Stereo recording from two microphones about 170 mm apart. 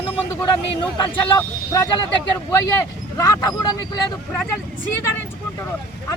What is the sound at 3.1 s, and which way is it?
Speech, 20° left (ahead or behind).